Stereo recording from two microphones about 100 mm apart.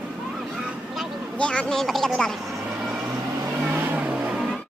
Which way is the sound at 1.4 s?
10° left (ahead or behind).